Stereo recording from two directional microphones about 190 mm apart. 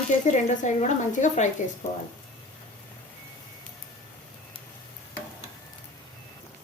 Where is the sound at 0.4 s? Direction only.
40° left (ahead or behind).